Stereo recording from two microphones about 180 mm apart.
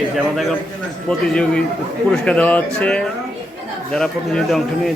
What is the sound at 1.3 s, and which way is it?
Speech, 5° left (ahead or behind).